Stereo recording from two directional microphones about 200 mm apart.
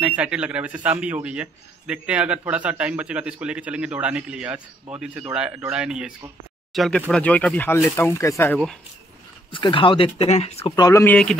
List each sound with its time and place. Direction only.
0.0 s a man's voice: 5° right (ahead or behind); by 8.5 s 15° left (ahead or behind)
9.5 s speech: 25° left (ahead or behind)
10.8 s speech: 15° left (ahead or behind)